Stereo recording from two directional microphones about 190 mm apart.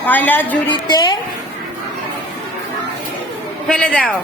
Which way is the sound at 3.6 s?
5° left (ahead or behind).